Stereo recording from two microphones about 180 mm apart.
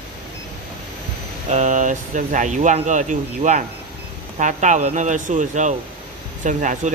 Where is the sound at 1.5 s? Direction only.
40° right (ahead or behind).